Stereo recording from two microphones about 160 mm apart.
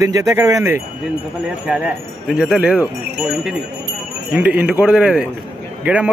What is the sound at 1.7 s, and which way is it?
Wind chime, 5° right (ahead or behind).